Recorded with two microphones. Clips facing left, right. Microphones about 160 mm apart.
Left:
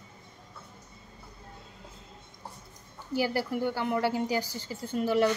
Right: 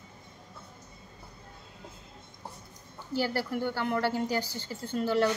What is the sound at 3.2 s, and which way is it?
A woman's voice, 15° left (ahead or behind).